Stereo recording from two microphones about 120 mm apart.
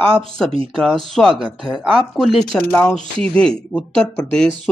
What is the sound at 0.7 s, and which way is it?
Speech, centre (ahead or behind).